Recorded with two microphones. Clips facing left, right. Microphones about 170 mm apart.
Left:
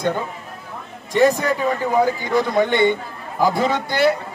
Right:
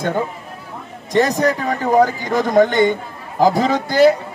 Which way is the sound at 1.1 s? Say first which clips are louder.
Right 1 dB; 40° right (ahead or behind).